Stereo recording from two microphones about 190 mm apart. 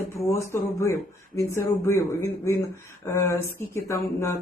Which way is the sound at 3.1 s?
15° left (ahead or behind).